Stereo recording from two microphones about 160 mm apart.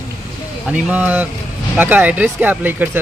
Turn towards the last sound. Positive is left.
turn(degrees=-10)  # may be behind; listen again after turning